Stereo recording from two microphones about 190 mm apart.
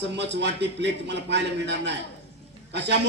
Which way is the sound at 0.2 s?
65° right (ahead or behind).